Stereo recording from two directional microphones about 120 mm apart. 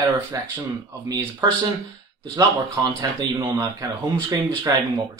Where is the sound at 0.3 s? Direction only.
30° right (ahead or behind).